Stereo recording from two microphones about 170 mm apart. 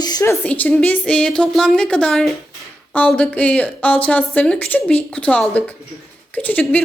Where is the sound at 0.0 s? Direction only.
20° left (ahead or behind).